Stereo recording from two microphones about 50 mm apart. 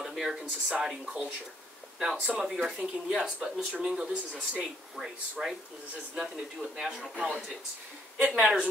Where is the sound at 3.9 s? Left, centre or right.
Centre.